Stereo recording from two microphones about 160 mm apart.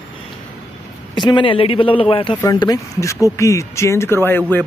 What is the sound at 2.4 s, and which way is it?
Speech, 25° left (ahead or behind).